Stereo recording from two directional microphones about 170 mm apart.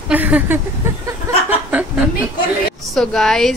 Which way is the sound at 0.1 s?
10° right (ahead or behind).